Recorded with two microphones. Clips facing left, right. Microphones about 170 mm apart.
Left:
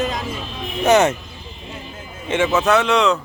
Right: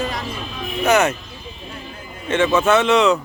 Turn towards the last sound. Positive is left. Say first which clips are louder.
# right 1 dB
turn(degrees=-5)  # may be behind; listen again after turning